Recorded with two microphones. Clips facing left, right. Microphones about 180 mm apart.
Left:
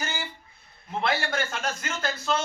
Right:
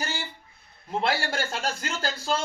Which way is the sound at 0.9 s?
35° right (ahead or behind).